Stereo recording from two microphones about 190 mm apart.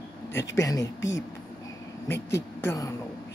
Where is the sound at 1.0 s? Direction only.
80° left.